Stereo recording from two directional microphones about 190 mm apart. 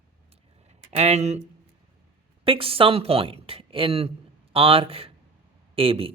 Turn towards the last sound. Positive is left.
turn(degrees=-30)  # may be behind; listen again after turning